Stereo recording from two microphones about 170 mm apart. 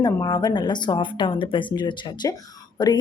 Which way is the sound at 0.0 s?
25° left (ahead or behind).